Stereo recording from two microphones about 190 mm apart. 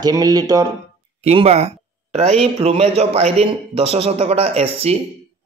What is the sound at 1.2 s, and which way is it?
Speech, 30° right (ahead or behind).